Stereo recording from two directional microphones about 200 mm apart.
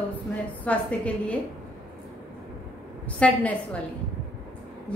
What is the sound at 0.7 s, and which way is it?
Speech, 5° left (ahead or behind).